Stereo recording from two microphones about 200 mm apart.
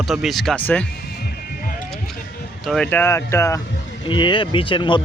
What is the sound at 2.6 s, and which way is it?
A man's voice, centre (ahead or behind).